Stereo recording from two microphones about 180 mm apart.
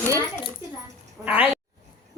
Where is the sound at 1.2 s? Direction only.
10° right (ahead or behind).